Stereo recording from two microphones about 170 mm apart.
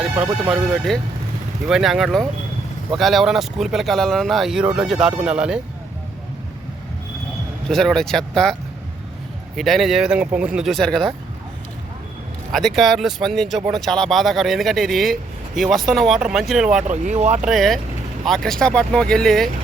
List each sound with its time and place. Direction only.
0.4 s speech: centre (ahead or behind)
7.7 s speech: centre (ahead or behind)
9.6 s speech: centre (ahead or behind)
12.5 s speech: centre (ahead or behind)
16.9 s speech: 40° right (ahead or behind)
17.4 s speech: centre (ahead or behind)